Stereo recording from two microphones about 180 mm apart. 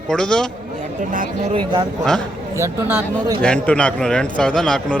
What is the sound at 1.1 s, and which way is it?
Speech, 45° right (ahead or behind).